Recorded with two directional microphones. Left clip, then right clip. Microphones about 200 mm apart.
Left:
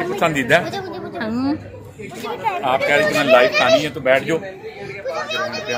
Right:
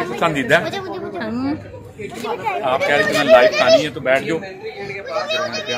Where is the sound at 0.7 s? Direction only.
20° right (ahead or behind).